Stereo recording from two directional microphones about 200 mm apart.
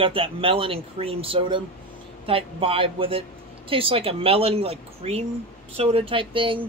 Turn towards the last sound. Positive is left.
turn(degrees=-25)  # may be behind; listen again after turning